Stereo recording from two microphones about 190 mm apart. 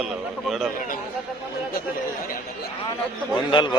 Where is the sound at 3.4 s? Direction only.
25° left (ahead or behind).